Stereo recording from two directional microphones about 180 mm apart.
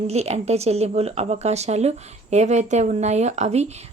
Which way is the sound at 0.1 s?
35° right (ahead or behind).